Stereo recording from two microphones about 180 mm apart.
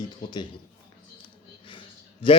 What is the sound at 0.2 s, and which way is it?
Speech, 25° left (ahead or behind).